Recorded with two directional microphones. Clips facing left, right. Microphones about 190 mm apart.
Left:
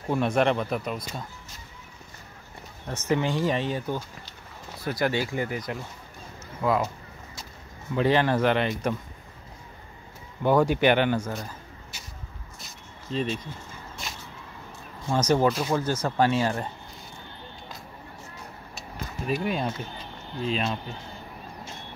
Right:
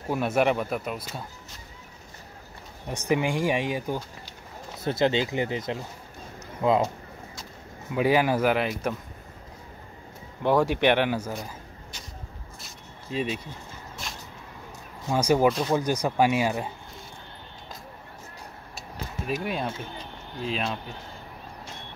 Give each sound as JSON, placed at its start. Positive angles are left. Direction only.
{"t": 0.1, "sound": "speech", "side_deg": -5}
{"t": 2.9, "sound": "speech", "side_deg": -15}
{"t": 4.7, "sound": "speech", "side_deg": -20}
{"t": 7.9, "sound": "speech", "side_deg": -10}
{"t": 10.4, "sound": "speech", "side_deg": 0}
{"t": 13.1, "sound": "speech", "side_deg": -10}
{"t": 14.0, "sound": "a sound", "side_deg": 0}
{"t": 15.0, "sound": "speech", "side_deg": -10}
{"t": 18.8, "sound": "speech", "side_deg": 0}